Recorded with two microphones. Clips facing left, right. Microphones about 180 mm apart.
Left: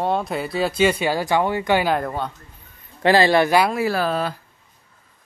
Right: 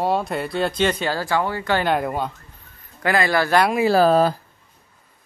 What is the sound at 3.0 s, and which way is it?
Speech, 25° left (ahead or behind).